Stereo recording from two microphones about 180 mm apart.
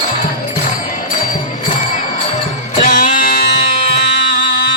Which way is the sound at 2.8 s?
50° left (ahead or behind).